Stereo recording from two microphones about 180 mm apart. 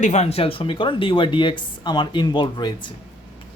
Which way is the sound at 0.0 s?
40° left (ahead or behind).